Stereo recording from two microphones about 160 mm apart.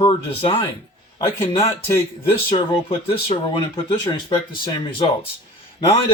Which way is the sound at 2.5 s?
35° left (ahead or behind).